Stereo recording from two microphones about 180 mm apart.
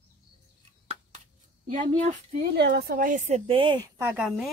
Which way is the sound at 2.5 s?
70° right (ahead or behind).